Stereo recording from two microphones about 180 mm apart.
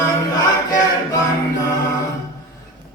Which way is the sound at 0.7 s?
20° left (ahead or behind).